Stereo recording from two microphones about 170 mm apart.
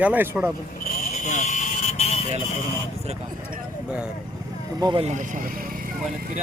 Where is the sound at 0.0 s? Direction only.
10° right (ahead or behind).